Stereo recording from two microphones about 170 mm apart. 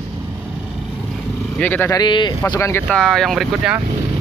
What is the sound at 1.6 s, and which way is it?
Speech, 10° left (ahead or behind).